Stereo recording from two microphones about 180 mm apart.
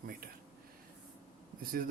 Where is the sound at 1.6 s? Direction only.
55° right (ahead or behind).